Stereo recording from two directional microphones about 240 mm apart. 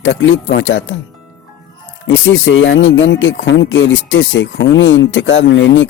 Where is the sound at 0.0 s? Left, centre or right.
Left.